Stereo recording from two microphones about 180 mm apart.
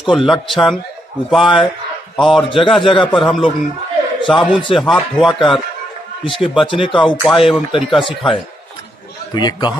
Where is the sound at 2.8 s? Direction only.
30° left (ahead or behind).